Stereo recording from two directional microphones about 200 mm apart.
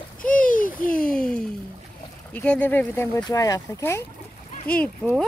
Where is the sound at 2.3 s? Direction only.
10° left (ahead or behind).